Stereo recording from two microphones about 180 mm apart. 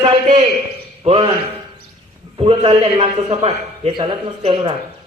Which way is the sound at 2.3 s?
30° right (ahead or behind).